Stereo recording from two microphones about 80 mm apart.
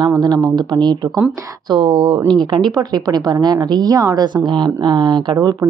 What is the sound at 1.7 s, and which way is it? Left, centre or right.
Speech, right.